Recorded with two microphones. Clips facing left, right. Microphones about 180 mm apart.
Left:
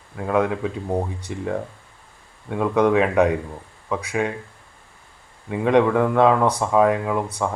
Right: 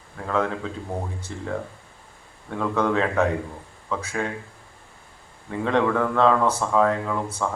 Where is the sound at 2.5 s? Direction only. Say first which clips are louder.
Left 5 dB; 15° left (ahead or behind).